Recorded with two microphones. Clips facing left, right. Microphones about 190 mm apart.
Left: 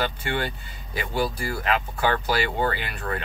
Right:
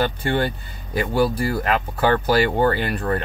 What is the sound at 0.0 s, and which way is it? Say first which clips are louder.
Speech: right 6 dB; 40° right (ahead or behind).